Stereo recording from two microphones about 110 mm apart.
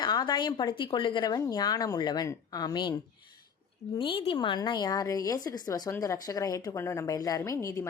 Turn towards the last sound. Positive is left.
turn(degrees=25)  # may be behind; listen again after turning